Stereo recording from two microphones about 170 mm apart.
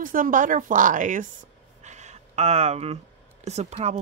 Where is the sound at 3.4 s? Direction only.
40° right (ahead or behind).